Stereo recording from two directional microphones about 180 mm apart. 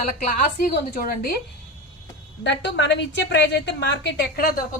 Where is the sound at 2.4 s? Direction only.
75° left (ahead or behind); by 4.6 s 60° left (ahead or behind).